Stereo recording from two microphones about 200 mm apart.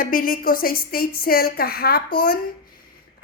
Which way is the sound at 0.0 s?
45° left (ahead or behind).